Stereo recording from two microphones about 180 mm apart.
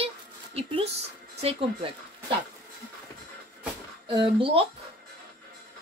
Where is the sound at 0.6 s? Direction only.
35° right (ahead or behind).